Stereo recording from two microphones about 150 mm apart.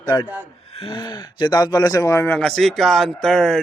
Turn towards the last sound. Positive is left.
turn(degrees=5)  # may be behind; listen again after turning